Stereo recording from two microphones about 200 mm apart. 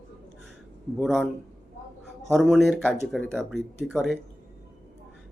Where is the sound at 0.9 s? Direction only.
Centre (ahead or behind).